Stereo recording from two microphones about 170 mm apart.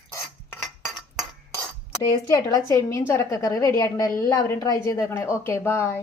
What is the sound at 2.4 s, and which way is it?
A woman's voice, 20° left (ahead or behind).